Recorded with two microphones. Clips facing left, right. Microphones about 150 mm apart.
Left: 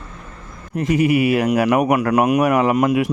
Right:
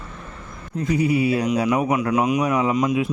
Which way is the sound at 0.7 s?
90° left.